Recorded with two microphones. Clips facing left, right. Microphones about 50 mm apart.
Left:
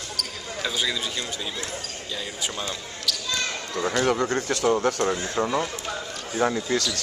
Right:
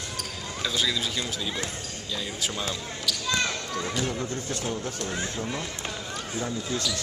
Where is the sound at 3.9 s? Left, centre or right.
Left.